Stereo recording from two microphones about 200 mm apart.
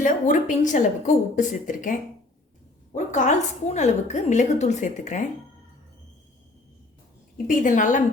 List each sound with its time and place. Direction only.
0.0 s a woman's voice: 40° left (ahead or behind)
7.4 s a woman's voice: 40° left (ahead or behind)